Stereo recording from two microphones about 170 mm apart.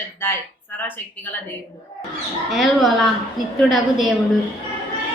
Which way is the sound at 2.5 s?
Centre (ahead or behind).